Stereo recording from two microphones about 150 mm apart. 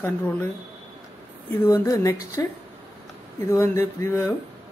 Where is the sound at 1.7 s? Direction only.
20° left (ahead or behind).